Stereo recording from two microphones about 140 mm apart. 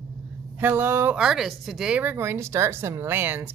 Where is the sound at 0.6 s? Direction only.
15° right (ahead or behind).